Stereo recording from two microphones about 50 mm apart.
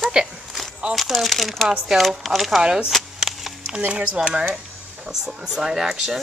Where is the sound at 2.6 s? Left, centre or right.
Centre.